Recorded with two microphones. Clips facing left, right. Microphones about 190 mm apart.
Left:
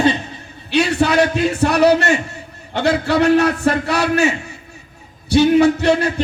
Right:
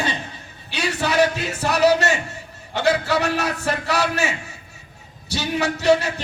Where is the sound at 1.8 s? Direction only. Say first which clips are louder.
Left 3 dB; 55° left (ahead or behind).